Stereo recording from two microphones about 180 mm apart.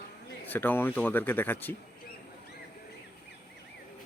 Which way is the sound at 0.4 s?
10° left (ahead or behind).